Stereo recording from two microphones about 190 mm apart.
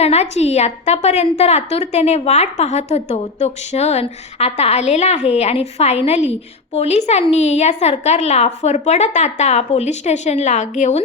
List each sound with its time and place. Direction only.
0.0 s a woman's voice: 35° left (ahead or behind)